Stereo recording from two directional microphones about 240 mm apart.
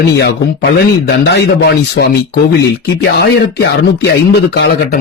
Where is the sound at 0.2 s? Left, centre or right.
Left.